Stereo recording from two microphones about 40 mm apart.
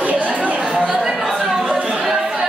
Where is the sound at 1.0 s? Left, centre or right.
Centre.